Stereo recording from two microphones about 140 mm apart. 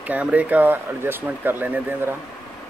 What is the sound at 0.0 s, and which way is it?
Speech, 10° right (ahead or behind).